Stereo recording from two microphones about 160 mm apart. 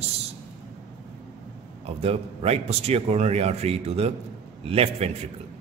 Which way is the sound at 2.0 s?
40° right (ahead or behind).